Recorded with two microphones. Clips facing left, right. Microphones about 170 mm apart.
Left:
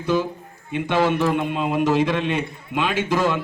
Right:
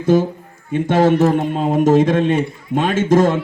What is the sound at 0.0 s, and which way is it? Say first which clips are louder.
Speech: right 7 dB; 45° right (ahead or behind).